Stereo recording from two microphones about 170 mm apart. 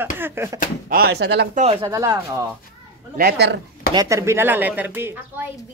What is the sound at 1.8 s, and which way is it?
Speech, 20° right (ahead or behind).